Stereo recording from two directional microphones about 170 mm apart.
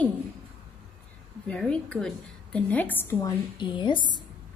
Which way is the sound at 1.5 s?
5° left (ahead or behind).